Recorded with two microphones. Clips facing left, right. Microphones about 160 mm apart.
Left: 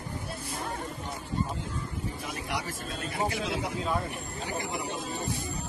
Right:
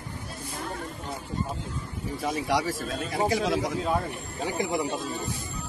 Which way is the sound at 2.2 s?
90° right.